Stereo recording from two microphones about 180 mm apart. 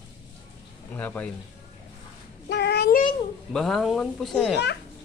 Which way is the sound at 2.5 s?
70° left (ahead or behind).